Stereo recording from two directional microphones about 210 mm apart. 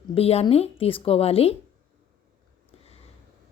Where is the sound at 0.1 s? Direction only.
30° left (ahead or behind).